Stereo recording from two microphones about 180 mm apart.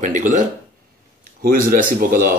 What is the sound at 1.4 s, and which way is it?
Speech, 50° right (ahead or behind).